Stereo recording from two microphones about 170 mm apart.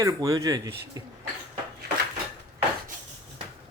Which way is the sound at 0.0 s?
20° right (ahead or behind).